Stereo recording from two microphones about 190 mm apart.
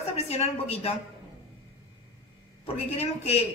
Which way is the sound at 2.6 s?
35° left (ahead or behind).